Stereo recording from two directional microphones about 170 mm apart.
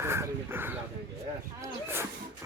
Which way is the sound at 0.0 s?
15° right (ahead or behind).